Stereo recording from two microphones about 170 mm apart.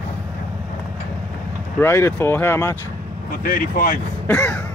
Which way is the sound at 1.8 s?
15° left (ahead or behind).